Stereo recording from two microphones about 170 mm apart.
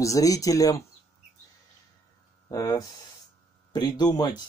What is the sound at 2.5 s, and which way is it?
Speech, 20° left (ahead or behind).